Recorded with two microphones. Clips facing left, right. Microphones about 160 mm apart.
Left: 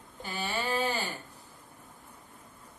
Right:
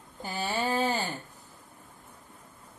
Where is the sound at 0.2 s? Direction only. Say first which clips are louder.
Right 3 dB; 40° right (ahead or behind).